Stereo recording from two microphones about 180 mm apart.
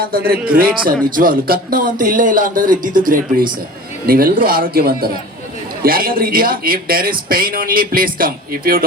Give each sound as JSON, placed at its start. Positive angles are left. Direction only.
{"t": 0.0, "sound": "a man's voice", "side_deg": -55}